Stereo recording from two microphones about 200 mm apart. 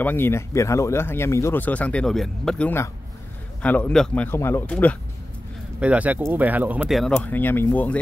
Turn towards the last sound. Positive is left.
turn(degrees=10)  # may be behind; listen again after turning